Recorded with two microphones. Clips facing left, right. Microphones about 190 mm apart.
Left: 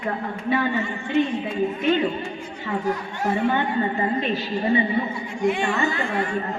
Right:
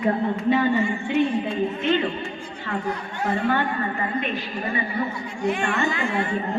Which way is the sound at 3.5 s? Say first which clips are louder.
Left 2 dB; 25° left (ahead or behind).